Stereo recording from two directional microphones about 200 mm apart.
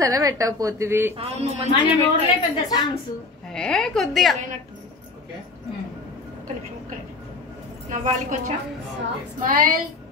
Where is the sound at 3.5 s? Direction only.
5° left (ahead or behind).